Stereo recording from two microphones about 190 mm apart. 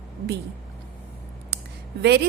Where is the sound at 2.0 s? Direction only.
60° right (ahead or behind).